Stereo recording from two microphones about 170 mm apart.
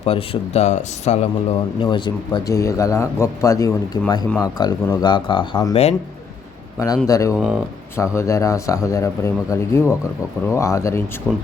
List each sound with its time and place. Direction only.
0.0 s speech: 35° left (ahead or behind)
6.7 s speech: 20° left (ahead or behind)
7.3 s speech: 5° right (ahead or behind)
7.9 s speech: 15° left (ahead or behind)